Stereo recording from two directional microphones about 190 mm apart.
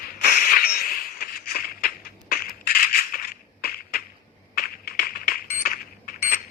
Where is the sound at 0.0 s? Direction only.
50° left (ahead or behind).